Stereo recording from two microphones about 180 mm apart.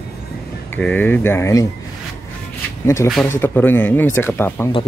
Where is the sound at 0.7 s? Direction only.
10° left (ahead or behind).